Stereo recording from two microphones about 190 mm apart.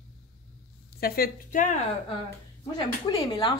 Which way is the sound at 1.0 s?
50° left (ahead or behind).